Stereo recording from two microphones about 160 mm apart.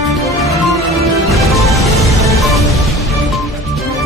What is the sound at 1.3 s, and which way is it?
Music, centre (ahead or behind).